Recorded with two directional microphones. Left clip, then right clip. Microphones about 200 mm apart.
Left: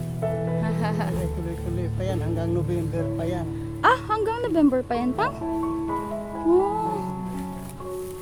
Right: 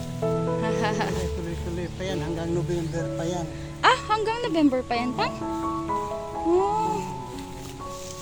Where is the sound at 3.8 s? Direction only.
20° left (ahead or behind).